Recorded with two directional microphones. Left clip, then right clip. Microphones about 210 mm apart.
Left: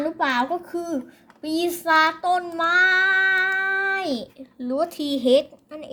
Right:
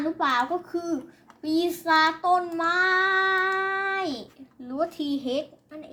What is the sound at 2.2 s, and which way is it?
Child singing, 30° left (ahead or behind).